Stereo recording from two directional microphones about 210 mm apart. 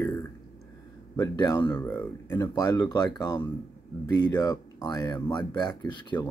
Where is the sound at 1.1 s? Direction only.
20° left (ahead or behind).